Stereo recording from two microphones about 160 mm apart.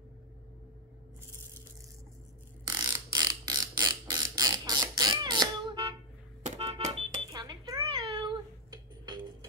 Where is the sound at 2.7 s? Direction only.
25° right (ahead or behind).